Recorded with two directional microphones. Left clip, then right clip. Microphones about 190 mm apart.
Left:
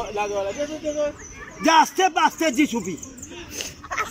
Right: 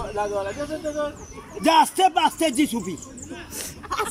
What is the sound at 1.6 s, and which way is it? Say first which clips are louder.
Speech: even; 10° right (ahead or behind).